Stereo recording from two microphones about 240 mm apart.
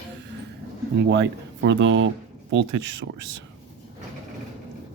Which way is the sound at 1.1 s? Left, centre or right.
Right.